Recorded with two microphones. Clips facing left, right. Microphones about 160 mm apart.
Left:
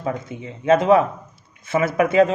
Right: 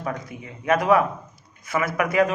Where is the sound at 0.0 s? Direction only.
25° left (ahead or behind).